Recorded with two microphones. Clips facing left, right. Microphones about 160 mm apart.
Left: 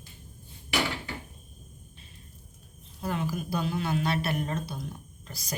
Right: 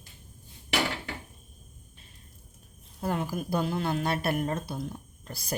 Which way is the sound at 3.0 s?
50° right (ahead or behind).